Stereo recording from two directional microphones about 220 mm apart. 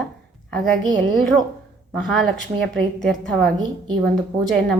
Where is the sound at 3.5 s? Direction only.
20° right (ahead or behind).